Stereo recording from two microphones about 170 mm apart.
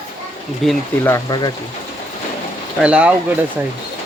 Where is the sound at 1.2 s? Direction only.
25° left (ahead or behind).